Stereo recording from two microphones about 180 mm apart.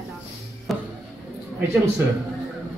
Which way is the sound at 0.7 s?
Centre (ahead or behind).